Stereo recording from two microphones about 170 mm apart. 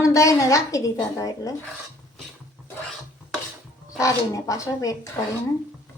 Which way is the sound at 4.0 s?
20° left (ahead or behind).